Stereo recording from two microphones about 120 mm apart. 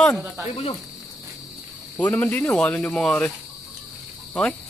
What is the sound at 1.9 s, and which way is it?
Speech, 15° left (ahead or behind).